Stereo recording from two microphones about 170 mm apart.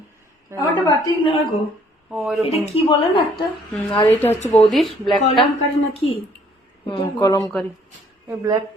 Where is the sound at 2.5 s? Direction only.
35° left (ahead or behind).